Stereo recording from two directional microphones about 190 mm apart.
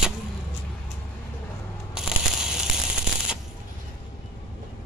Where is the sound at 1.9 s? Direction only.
5° right (ahead or behind).